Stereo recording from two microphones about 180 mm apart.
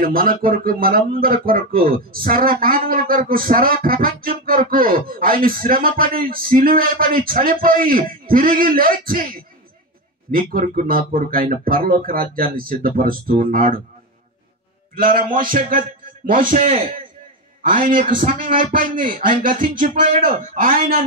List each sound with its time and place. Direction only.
0.0 s speech: 55° right (ahead or behind)
15.0 s a man's voice: 50° right (ahead or behind)